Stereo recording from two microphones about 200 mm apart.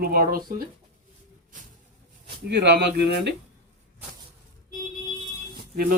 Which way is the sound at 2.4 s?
60° right (ahead or behind).